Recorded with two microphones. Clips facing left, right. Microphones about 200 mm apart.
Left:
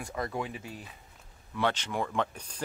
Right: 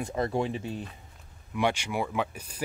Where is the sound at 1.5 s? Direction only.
10° right (ahead or behind).